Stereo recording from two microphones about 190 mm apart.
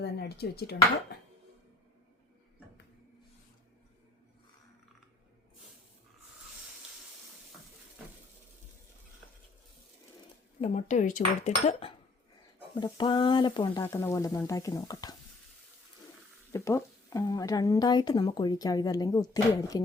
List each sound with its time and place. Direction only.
0.0 s speech: 60° left (ahead or behind)
10.6 s a woman's voice: 35° left (ahead or behind); by 15.1 s 20° left (ahead or behind)
16.5 s a woman's voice: 15° left (ahead or behind)